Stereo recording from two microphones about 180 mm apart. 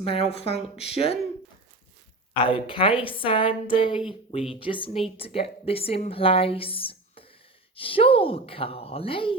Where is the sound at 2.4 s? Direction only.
30° left (ahead or behind).